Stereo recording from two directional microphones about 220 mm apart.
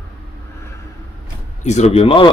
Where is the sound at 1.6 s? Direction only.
30° left (ahead or behind).